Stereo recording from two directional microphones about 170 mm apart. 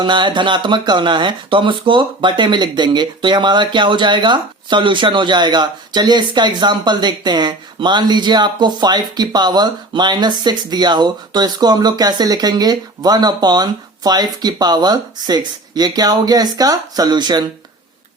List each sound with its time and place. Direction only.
0.0 s speech: 25° right (ahead or behind)